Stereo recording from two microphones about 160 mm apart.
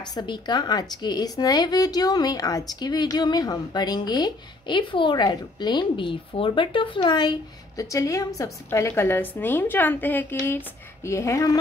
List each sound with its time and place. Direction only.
0.0 s speech: 25° left (ahead or behind)